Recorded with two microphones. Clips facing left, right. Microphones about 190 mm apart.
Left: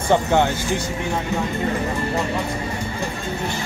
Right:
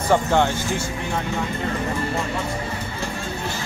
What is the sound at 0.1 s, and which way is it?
Speech, 15° left (ahead or behind).